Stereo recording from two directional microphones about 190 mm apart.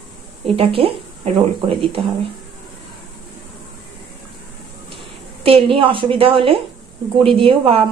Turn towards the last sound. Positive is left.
turn(degrees=-30)  # may be behind; listen again after turning